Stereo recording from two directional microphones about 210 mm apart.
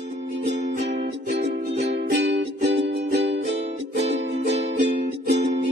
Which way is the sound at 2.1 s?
55° right (ahead or behind).